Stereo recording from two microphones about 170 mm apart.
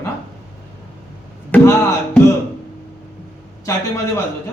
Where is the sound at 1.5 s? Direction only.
10° left (ahead or behind).